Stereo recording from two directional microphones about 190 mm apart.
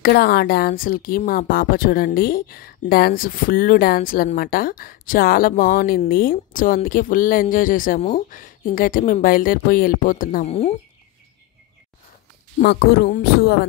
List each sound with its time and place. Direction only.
0.0 s speech: 55° left (ahead or behind)
10.4 s speech: 35° left (ahead or behind)
12.5 s speech: 55° left (ahead or behind)